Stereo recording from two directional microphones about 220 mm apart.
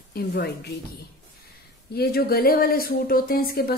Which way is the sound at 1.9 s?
45° left (ahead or behind).